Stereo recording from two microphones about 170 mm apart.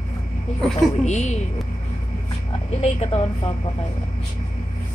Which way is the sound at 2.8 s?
40° left (ahead or behind).